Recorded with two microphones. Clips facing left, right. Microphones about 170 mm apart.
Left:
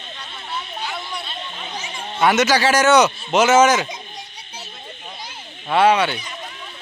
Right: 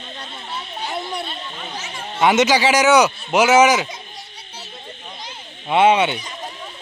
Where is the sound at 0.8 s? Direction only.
35° right (ahead or behind).